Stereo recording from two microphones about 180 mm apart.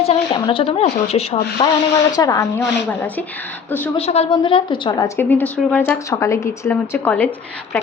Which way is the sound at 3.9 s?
35° left (ahead or behind).